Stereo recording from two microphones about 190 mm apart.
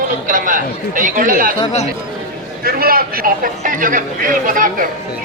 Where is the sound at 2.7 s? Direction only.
50° right (ahead or behind).